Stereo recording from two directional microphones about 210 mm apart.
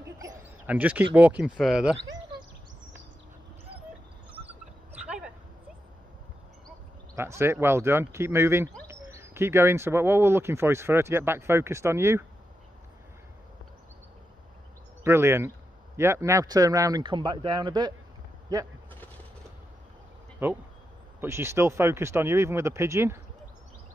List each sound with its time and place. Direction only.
0.7 s speech: 5° right (ahead or behind)
5.0 s a sound: 5° right (ahead or behind)
7.2 s speech: 10° right (ahead or behind)
15.0 s speech: 10° right (ahead or behind)
20.4 s speech: 10° right (ahead or behind)